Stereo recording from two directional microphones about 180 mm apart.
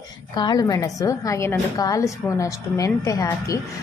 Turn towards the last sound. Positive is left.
turn(degrees=20)  # may be behind; listen again after turning